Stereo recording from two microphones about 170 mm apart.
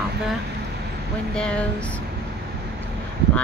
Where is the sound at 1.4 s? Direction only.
5° left (ahead or behind).